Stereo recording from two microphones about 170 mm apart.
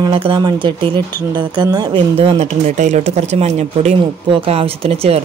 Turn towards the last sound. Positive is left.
turn(degrees=-35)  # may be behind; listen again after turning